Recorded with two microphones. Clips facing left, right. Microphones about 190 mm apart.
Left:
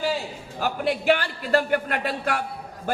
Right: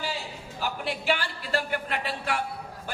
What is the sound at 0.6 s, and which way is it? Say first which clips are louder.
A man's voice: left 7 dB; 50° left (ahead or behind).